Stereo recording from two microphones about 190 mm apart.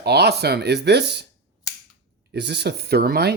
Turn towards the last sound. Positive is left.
turn(degrees=-55)  # may be behind; listen again after turning